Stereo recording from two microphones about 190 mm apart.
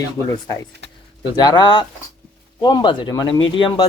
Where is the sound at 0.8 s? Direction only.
65° right (ahead or behind).